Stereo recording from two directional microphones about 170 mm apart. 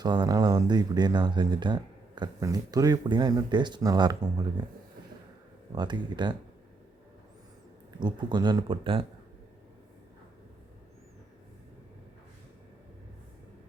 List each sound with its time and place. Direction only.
0.0 s speech: 25° right (ahead or behind)
5.7 s speech: 25° right (ahead or behind)
7.9 s speech: 25° right (ahead or behind)